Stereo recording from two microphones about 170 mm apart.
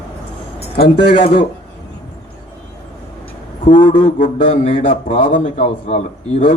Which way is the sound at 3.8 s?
50° left (ahead or behind).